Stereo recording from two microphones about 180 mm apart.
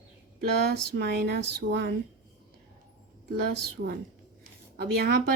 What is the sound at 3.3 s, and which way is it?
Speech, 55° right (ahead or behind).